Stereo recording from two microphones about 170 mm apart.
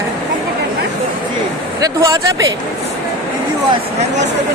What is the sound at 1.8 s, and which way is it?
Speech, 20° right (ahead or behind).